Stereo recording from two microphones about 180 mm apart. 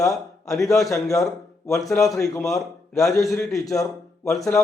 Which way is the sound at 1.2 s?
15° left (ahead or behind).